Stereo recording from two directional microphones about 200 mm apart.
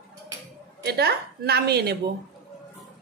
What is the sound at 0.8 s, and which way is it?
A woman's voice, 55° right (ahead or behind).